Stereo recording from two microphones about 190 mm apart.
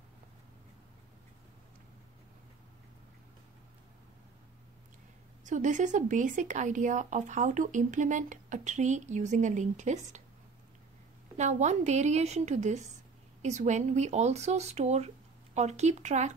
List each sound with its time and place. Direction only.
5.4 s speech: 40° right (ahead or behind)
11.3 s speech: 35° right (ahead or behind)